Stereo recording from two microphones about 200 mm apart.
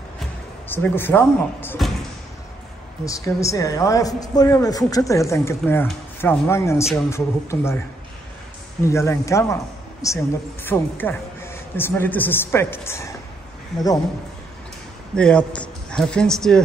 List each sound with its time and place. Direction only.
0.7 s a man's voice: 10° left (ahead or behind)
3.1 s a man's voice: 15° left (ahead or behind)
8.8 s a man's voice: 15° left (ahead or behind)
15.1 s a man's voice: 5° left (ahead or behind)